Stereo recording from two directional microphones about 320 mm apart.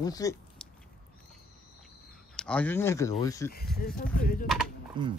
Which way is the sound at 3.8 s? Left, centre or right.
Left.